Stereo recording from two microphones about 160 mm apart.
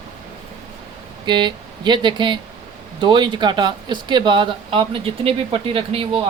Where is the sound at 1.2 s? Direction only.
30° right (ahead or behind).